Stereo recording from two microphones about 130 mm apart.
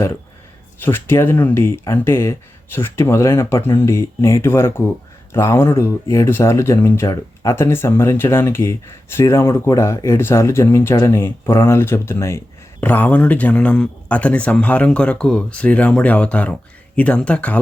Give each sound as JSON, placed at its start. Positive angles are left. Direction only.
{"t": 0.8, "sound": "speech", "side_deg": 15}